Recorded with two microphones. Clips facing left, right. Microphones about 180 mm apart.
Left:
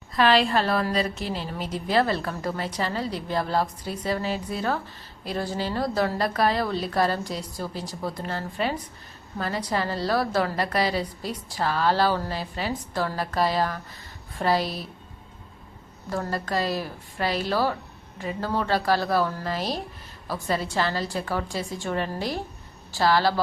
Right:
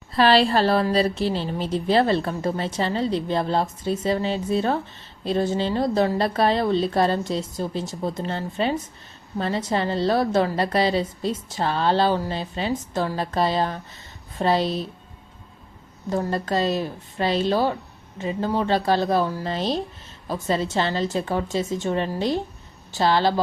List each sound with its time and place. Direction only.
0.2 s a woman's voice: 30° right (ahead or behind)
16.0 s a woman's voice: 20° right (ahead or behind)